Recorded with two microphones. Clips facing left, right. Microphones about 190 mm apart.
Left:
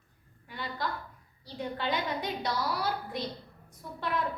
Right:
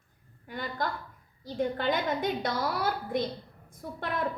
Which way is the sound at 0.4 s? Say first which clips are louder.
Right 3 dB; 45° right (ahead or behind).